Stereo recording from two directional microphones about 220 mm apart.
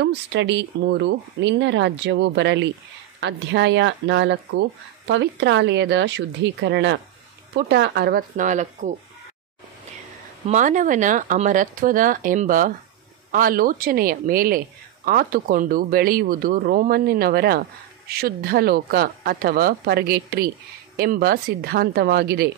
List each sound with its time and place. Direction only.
0.0 s speech: 50° right (ahead or behind); by 8.9 s 35° right (ahead or behind)
10.4 s speech: 35° right (ahead or behind)